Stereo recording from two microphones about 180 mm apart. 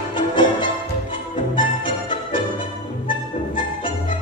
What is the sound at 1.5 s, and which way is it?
Music, 30° left (ahead or behind).